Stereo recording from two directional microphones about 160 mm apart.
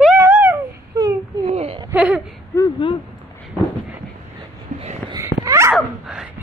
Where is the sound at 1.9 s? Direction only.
5° right (ahead or behind).